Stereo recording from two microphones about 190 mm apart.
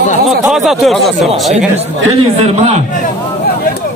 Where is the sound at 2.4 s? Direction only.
35° right (ahead or behind).